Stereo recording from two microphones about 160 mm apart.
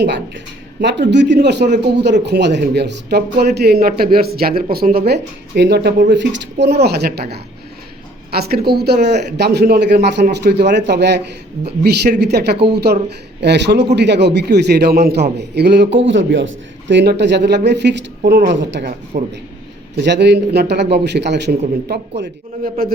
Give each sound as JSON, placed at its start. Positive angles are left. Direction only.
{"t": 0.8, "sound": "speech", "side_deg": -90}
{"t": 8.3, "sound": "speech", "side_deg": -80}
{"t": 16.9, "sound": "speech", "side_deg": -90}
{"t": 20.0, "sound": "speech", "side_deg": -90}
{"t": 22.2, "sound": "a man's voice", "side_deg": -70}